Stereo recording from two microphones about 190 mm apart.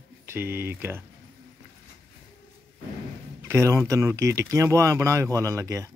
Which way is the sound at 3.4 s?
15° right (ahead or behind).